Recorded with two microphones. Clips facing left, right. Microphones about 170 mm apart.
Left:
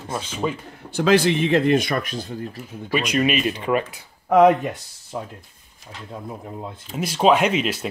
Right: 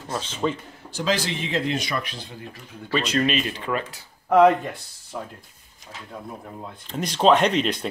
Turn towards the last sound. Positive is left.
turn(degrees=5)  # may be behind; listen again after turning